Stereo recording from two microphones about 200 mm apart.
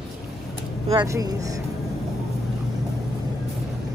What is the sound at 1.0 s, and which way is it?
Speech, 15° right (ahead or behind).